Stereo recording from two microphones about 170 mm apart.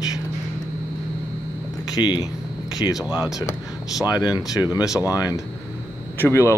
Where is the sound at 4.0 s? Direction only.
25° left (ahead or behind).